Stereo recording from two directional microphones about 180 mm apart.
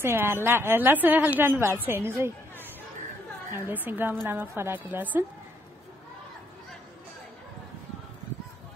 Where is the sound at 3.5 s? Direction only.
10° right (ahead or behind).